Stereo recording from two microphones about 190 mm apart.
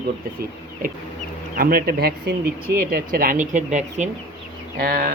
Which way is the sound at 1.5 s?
50° right (ahead or behind).